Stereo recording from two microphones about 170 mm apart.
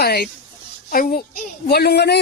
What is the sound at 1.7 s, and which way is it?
Speech, 70° left (ahead or behind).